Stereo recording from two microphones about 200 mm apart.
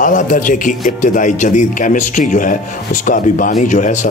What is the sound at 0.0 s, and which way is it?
Speech, 40° left (ahead or behind).